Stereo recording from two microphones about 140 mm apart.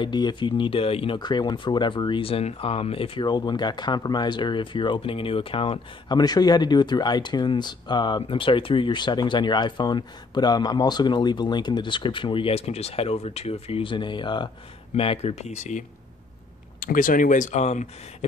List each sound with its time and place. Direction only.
0.0 s speech: 35° left (ahead or behind)
15.0 s speech: 45° left (ahead or behind)
16.8 s speech: 75° left (ahead or behind); by 17.8 s 55° left (ahead or behind)